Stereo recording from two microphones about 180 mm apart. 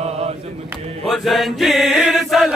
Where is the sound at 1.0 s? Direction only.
Centre (ahead or behind).